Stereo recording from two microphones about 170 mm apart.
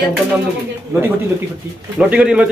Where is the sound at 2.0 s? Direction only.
5° right (ahead or behind).